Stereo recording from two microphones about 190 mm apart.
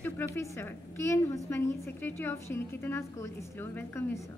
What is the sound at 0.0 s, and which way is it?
A woman's voice, 10° left (ahead or behind).